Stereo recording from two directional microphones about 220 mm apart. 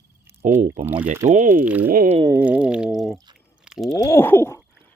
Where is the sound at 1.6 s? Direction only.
5° right (ahead or behind).